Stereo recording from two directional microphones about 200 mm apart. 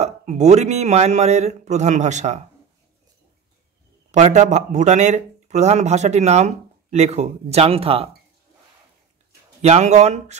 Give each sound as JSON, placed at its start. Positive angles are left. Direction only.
{"t": 0.0, "sound": "speech", "side_deg": -35}
{"t": 4.1, "sound": "speech", "side_deg": -35}
{"t": 9.6, "sound": "speech", "side_deg": -35}